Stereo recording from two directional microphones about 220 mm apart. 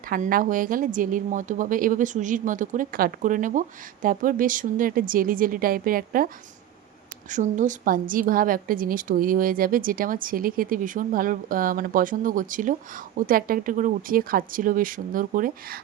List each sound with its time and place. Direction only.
0.1 s a woman's voice: 40° right (ahead or behind)